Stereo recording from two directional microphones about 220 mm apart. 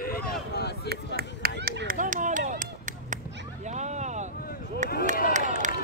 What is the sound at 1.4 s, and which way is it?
Run, 45° right (ahead or behind).